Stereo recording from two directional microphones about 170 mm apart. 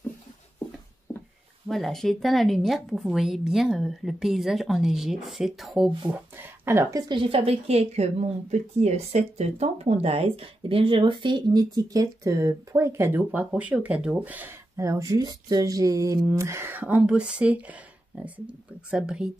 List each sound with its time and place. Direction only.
1.1 s a sound: 20° left (ahead or behind)
1.7 s a woman's voice: centre (ahead or behind)
6.3 s a woman's voice: 15° right (ahead or behind)